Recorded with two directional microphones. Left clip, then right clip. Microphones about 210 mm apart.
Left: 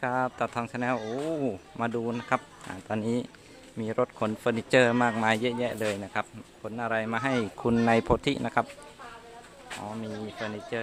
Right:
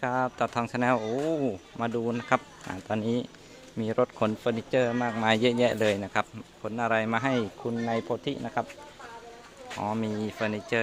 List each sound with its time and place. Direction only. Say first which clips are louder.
0.0 s speech: right 1 dB; 5° right (ahead or behind)
4.7 s speech: left 5 dB; 10° left (ahead or behind)
5.1 s speech: right 1 dB; 10° right (ahead or behind)
5.4 s speech: right 5 dB; 20° right (ahead or behind)
7.6 s speech: left 6 dB; 25° left (ahead or behind); by 8.6 s 10° left (ahead or behind)
9.8 s speech: right 8 dB; 30° right (ahead or behind)